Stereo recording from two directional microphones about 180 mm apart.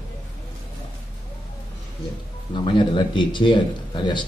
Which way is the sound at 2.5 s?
25° left (ahead or behind).